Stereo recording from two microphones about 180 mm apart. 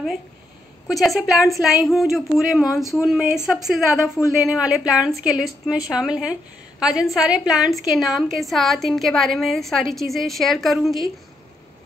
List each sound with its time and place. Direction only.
0.8 s a woman's voice: centre (ahead or behind)